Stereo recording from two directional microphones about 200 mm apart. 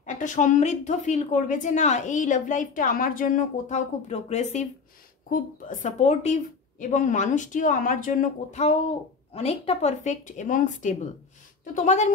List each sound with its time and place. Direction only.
0.0 s a woman's voice: 40° left (ahead or behind)